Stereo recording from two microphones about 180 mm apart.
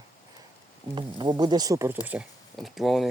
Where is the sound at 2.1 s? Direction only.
5° right (ahead or behind).